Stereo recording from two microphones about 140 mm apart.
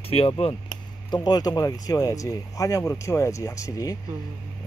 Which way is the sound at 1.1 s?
30° left (ahead or behind).